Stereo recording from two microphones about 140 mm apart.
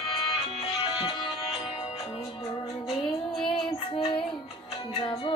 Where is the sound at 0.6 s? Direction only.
40° left (ahead or behind).